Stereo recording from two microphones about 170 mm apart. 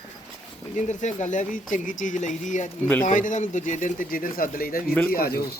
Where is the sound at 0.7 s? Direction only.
45° left (ahead or behind); by 5.4 s 60° left (ahead or behind).